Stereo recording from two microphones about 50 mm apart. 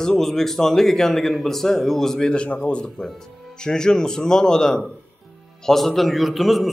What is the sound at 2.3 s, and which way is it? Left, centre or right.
A man's voice, left.